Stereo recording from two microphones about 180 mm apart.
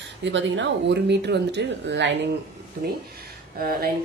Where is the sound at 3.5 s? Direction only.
55° right (ahead or behind).